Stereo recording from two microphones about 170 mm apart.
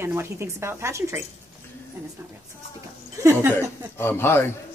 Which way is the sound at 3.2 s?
15° right (ahead or behind).